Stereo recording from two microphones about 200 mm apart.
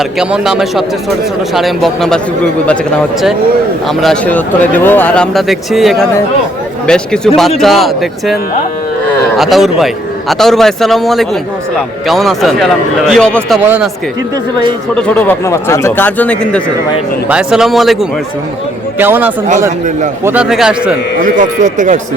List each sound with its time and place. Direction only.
0.0 s speech: 5° right (ahead or behind)
3.8 s speech: centre (ahead or behind)
9.4 s speech: centre (ahead or behind)
13.7 s a man's voice: 5° right (ahead or behind)
15.0 s speech: 10° left (ahead or behind)
18.9 s a man's voice: 10° right (ahead or behind)
21.2 s speech: 40° right (ahead or behind)